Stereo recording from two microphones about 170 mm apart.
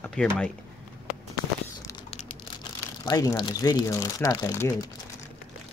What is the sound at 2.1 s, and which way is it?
Speech, 25° left (ahead or behind).